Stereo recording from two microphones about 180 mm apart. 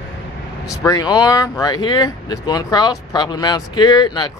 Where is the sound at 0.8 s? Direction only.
20° left (ahead or behind).